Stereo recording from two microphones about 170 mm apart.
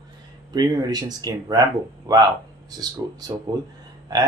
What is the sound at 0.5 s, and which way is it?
Speech, 25° right (ahead or behind).